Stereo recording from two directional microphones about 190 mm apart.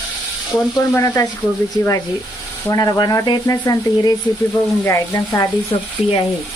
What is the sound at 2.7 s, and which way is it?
Speech, 20° left (ahead or behind).